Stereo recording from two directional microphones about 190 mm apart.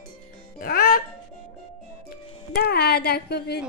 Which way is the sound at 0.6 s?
50° left (ahead or behind).